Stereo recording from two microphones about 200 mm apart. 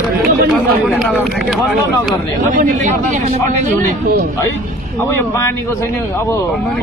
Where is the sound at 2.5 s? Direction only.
40° right (ahead or behind).